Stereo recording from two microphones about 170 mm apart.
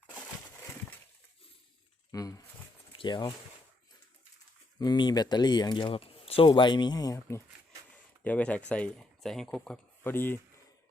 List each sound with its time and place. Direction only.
2.1 s speech: 20° left (ahead or behind)
4.8 s speech: 25° left (ahead or behind)